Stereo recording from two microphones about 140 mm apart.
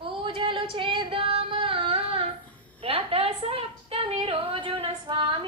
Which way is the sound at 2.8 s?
45° right (ahead or behind).